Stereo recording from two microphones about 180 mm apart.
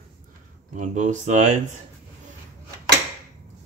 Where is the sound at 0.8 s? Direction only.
40° right (ahead or behind).